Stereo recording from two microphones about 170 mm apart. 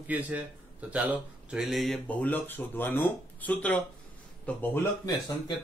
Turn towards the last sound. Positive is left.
turn(degrees=15)  # may be behind; listen again after turning